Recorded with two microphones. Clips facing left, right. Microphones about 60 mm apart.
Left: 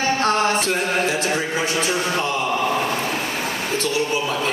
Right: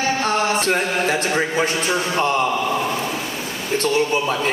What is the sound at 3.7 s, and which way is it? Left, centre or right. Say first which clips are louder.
Speech: right 5 dB; right.